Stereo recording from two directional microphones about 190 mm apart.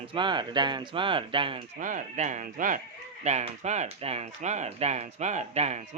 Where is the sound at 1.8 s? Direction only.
40° right (ahead or behind).